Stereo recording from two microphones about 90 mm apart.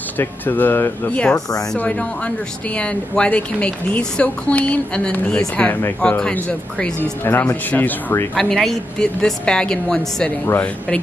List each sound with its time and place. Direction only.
0.2 s speech: 20° left (ahead or behind)
1.1 s speech: 10° left (ahead or behind)
7.3 s speech: 25° left (ahead or behind)
8.4 s speech: 5° left (ahead or behind)
10.4 s speech: 25° left (ahead or behind)